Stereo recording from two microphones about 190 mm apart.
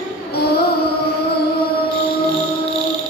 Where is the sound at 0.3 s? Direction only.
60° left (ahead or behind).